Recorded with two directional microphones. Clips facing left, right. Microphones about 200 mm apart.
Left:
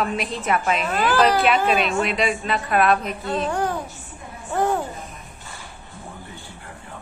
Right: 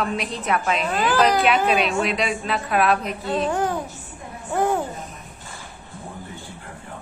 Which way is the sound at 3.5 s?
15° right (ahead or behind).